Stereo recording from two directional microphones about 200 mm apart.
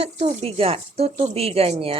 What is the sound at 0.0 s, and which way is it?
Speech, 30° right (ahead or behind).